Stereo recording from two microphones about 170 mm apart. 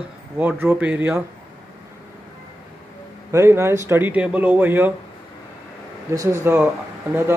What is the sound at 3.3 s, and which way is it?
Speech, 15° right (ahead or behind).